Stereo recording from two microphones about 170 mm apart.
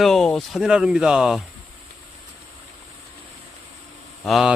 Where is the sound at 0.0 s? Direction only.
Centre (ahead or behind).